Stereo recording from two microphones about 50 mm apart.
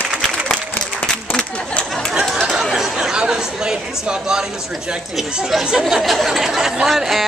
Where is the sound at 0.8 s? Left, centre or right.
Left.